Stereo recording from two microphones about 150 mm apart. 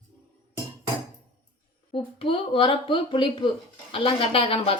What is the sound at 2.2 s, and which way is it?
Speech, 35° left (ahead or behind).